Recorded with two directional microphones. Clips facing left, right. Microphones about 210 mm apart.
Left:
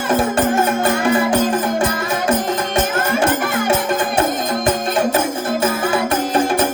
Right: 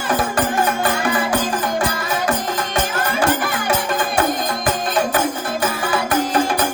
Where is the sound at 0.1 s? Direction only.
25° left (ahead or behind).